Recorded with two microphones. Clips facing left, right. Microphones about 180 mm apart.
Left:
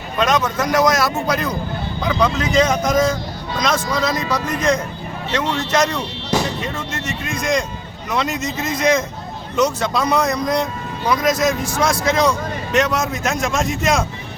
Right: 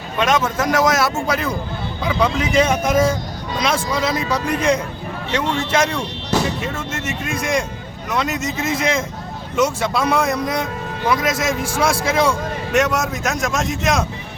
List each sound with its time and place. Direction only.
0.2 s a man's voice: 5° right (ahead or behind)
8.1 s a man's voice: centre (ahead or behind)